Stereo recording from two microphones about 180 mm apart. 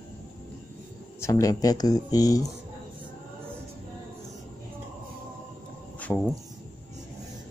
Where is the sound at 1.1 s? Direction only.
15° left (ahead or behind).